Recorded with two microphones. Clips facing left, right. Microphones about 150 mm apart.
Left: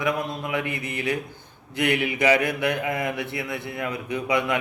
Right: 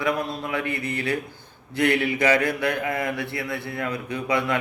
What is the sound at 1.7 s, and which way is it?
Mantra, 15° left (ahead or behind).